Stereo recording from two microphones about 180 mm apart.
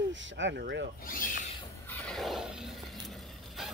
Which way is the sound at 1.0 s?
50° left (ahead or behind).